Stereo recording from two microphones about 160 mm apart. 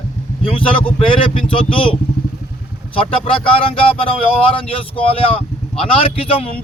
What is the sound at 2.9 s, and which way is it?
A man's voice, 35° left (ahead or behind).